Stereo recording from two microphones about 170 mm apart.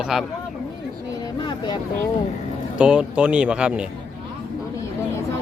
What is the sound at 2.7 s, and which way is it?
Speech, 5° right (ahead or behind).